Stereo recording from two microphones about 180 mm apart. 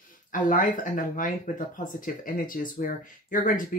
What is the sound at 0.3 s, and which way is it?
Speech, 45° left (ahead or behind).